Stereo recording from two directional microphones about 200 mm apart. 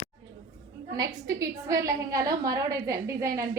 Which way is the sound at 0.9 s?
15° right (ahead or behind).